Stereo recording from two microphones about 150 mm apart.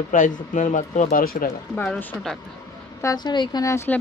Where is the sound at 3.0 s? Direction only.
30° left (ahead or behind).